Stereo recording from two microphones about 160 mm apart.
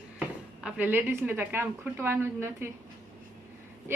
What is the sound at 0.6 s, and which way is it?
A woman's voice, 10° right (ahead or behind).